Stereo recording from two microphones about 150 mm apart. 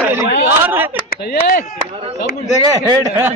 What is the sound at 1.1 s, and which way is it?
Speech, 85° left.